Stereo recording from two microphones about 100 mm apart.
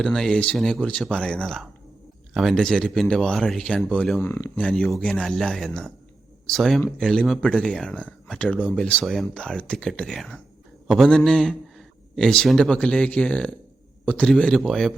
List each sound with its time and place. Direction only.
0.0 s a man's voice: 5° left (ahead or behind)
4.2 s speech: 25° left (ahead or behind)
4.5 s a man's voice: 10° left (ahead or behind)